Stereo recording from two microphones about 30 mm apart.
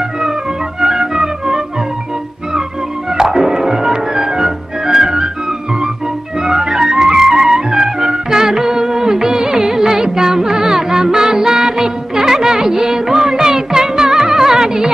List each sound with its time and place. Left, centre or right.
0.7 s music: centre
3.1 s music: centre
6.4 s music: right